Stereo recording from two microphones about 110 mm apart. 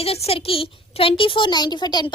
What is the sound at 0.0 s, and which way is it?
A child's voice, 65° left (ahead or behind).